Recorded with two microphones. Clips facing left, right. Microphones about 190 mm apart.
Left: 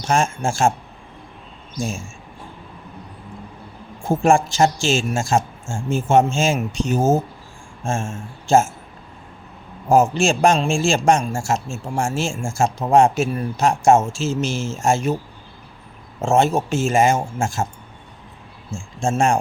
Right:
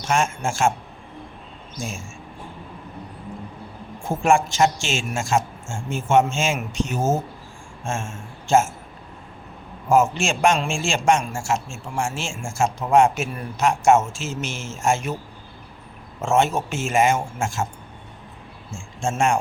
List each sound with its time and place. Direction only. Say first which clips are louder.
0.1 s a man's voice: left 3 dB; 35° left (ahead or behind)
4.1 s a man's voice: left 3 dB; 35° left (ahead or behind)
9.9 s a man's voice: left 3 dB; 35° left (ahead or behind)
16.2 s a man's voice: left 3 dB; 35° left (ahead or behind)
18.9 s a man's voice: left 3 dB; 35° left (ahead or behind)